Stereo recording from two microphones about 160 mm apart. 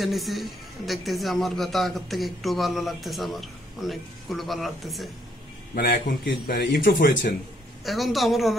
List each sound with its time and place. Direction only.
0.0 s speech: centre (ahead or behind)
5.8 s a man's voice: 65° left (ahead or behind)
7.8 s speech: centre (ahead or behind)